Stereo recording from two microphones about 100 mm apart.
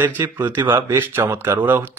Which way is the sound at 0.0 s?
20° right (ahead or behind).